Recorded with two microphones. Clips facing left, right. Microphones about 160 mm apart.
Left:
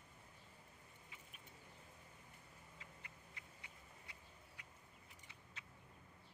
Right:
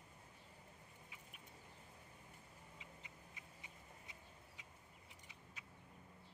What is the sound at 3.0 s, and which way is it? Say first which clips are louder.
Duck: right 1 dB; 20° right (ahead or behind).